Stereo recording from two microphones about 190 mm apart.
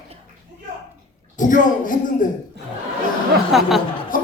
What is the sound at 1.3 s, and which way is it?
Speech, 40° left (ahead or behind).